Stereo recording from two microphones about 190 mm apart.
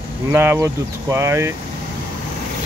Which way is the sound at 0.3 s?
10° right (ahead or behind).